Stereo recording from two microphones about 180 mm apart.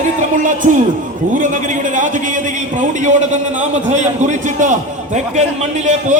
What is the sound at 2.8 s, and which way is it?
A man's voice, 40° right (ahead or behind).